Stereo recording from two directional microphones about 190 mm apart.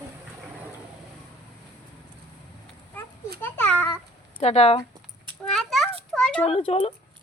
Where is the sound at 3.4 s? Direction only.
10° left (ahead or behind).